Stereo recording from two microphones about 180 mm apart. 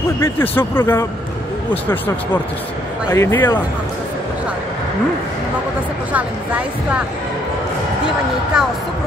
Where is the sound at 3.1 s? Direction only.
15° left (ahead or behind).